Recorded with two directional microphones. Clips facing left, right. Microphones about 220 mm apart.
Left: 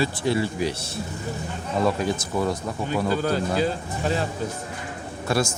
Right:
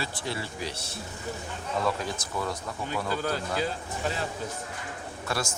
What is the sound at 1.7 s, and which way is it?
Speech, 20° left (ahead or behind).